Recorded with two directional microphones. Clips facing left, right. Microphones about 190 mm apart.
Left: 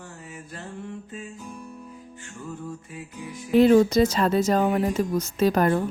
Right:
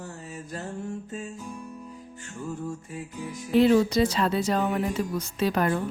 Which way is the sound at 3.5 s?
45° left (ahead or behind).